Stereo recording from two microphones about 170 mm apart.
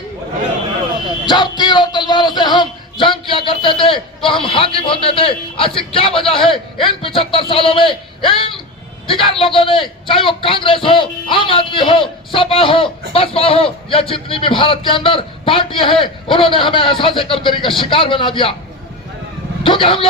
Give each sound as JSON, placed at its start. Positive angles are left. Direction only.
{"t": 1.3, "sound": "a man's voice", "side_deg": 25}
{"t": 19.6, "sound": "a man's voice", "side_deg": 30}